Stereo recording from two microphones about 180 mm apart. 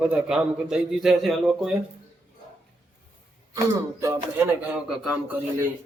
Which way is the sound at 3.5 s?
15° right (ahead or behind).